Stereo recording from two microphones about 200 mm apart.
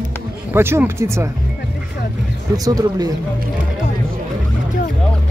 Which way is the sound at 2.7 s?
20° right (ahead or behind).